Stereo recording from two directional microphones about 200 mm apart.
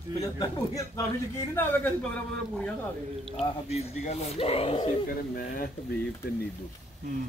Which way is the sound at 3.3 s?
30° left (ahead or behind).